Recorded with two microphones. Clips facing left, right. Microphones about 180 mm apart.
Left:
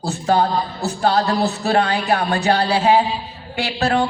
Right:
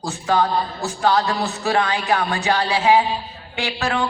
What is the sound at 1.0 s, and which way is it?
Music, 35° left (ahead or behind).